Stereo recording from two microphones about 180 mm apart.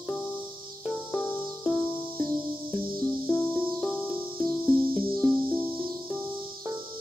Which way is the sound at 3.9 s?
10° right (ahead or behind).